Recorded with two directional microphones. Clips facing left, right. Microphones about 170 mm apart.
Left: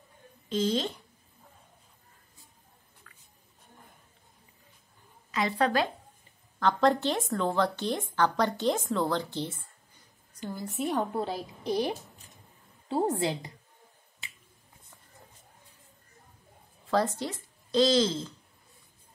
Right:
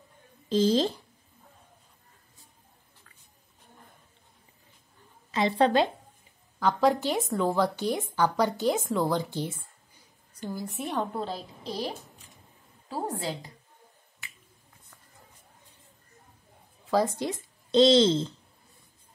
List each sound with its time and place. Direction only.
0.5 s speech: 35° right (ahead or behind)
5.3 s a woman's voice: 30° right (ahead or behind)
6.6 s a woman's voice: 5° right (ahead or behind)
10.4 s a woman's voice: centre (ahead or behind); by 13.3 s 20° left (ahead or behind)
16.9 s speech: 15° right (ahead or behind)